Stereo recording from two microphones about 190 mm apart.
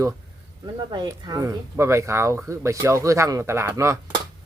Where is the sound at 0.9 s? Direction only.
25° right (ahead or behind).